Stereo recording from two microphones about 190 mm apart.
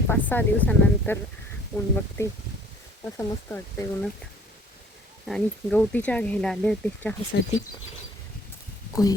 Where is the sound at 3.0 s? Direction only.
10° left (ahead or behind).